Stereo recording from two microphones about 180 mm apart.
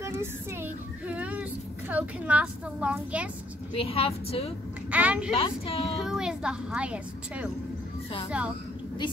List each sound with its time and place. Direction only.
0.0 s a child's voice: 15° right (ahead or behind)
3.7 s a woman's voice: 30° left (ahead or behind)
4.9 s a child's voice: 5° right (ahead or behind)
5.3 s a woman's voice: 30° left (ahead or behind)
5.9 s a woman's voice: 5° right (ahead or behind)